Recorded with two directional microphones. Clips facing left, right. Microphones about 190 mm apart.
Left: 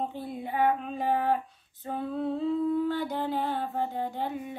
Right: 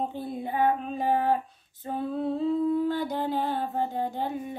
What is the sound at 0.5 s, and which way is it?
Female singing, 35° right (ahead or behind).